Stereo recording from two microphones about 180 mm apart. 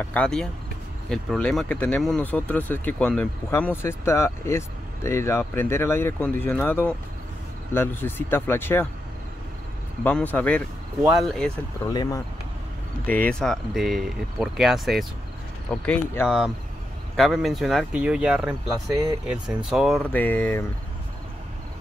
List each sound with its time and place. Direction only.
0.0 s speech: 5° left (ahead or behind)
10.0 s speech: 10° left (ahead or behind)
11.0 s speech: centre (ahead or behind)
11.9 s speech: 20° left (ahead or behind)
13.0 s speech: 10° left (ahead or behind)